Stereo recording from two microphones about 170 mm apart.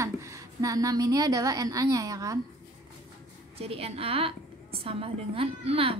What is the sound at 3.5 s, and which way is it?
A woman's voice, 35° right (ahead or behind).